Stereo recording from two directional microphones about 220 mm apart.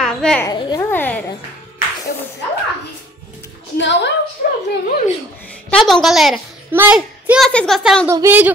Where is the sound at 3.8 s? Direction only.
50° left (ahead or behind).